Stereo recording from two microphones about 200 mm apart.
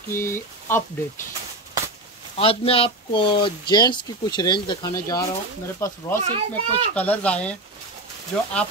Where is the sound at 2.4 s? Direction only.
30° left (ahead or behind).